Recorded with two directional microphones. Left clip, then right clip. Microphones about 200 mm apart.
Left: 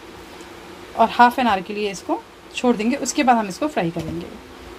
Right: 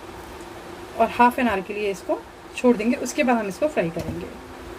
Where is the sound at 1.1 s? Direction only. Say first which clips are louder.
Left 4 dB; 50° left (ahead or behind).